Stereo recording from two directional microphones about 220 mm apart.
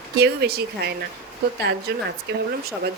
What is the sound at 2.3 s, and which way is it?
Speech, 45° right (ahead or behind).